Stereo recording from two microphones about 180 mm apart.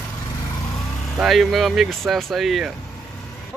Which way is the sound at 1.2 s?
Centre (ahead or behind).